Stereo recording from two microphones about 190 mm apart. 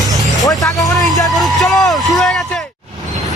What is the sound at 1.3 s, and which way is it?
Speech, centre (ahead or behind).